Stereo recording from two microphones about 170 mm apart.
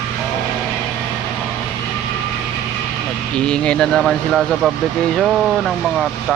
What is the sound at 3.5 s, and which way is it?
Speech, 5° left (ahead or behind).